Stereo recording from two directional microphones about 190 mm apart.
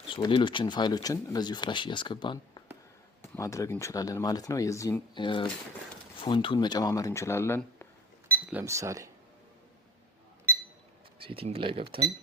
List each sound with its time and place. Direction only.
0.1 s speech: 25° left (ahead or behind)
8.4 s speech: 10° right (ahead or behind)
11.2 s speech: 30° right (ahead or behind)